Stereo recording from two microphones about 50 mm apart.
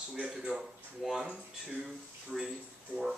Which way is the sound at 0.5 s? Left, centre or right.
Right.